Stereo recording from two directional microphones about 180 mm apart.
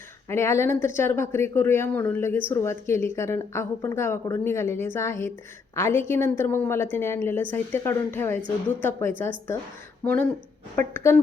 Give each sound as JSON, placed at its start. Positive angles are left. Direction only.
{"t": 0.3, "sound": "a woman's voice", "side_deg": 15}